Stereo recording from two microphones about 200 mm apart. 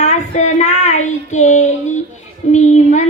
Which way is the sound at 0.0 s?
35° left (ahead or behind).